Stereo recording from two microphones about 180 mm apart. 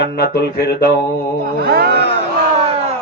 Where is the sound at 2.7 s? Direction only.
35° right (ahead or behind).